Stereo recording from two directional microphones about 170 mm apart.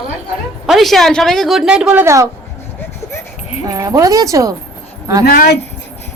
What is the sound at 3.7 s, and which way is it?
Speech, 20° right (ahead or behind).